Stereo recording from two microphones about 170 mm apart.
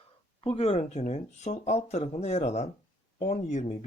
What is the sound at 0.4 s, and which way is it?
Speech, 35° left (ahead or behind).